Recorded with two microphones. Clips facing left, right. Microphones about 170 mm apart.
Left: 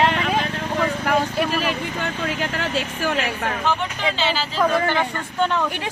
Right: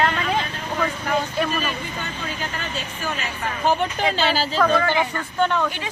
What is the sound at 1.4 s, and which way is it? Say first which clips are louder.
Speech: left 3 dB; 85° left.